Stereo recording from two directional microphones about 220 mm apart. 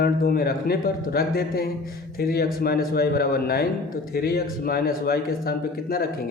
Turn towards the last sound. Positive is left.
turn(degrees=45)  # may be behind; listen again after turning